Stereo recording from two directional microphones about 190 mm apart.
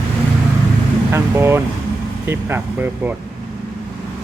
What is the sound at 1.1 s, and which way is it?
Speech, 15° right (ahead or behind).